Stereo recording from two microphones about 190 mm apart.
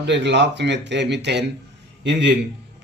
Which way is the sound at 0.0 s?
65° right (ahead or behind).